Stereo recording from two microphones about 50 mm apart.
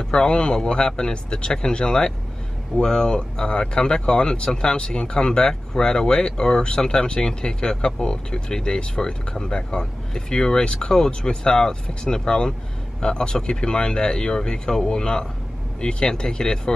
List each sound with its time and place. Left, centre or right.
0.0 s speech: centre